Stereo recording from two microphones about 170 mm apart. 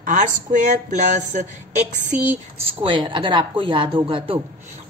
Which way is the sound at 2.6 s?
30° right (ahead or behind).